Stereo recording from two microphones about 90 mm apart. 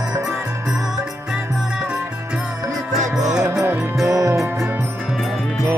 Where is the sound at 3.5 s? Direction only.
30° right (ahead or behind).